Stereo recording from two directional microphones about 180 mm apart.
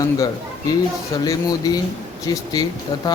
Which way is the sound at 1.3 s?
20° left (ahead or behind).